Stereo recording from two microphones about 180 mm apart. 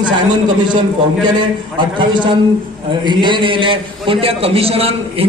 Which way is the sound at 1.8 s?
25° right (ahead or behind).